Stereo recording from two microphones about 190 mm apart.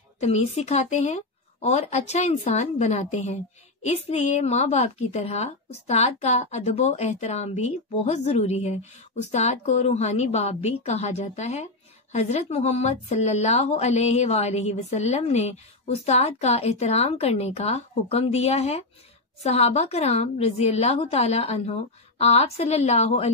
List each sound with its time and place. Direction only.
0.2 s a woman's voice: 35° left (ahead or behind)